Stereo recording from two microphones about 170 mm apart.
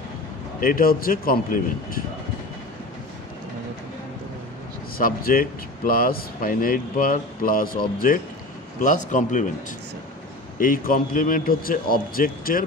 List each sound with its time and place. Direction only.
0.6 s speech: 55° left (ahead or behind)
4.9 s speech: 60° left (ahead or behind)
8.8 s a man's voice: 45° left (ahead or behind)
10.6 s speech: 55° left (ahead or behind)